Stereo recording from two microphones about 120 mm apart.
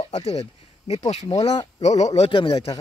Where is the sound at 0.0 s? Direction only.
60° left (ahead or behind).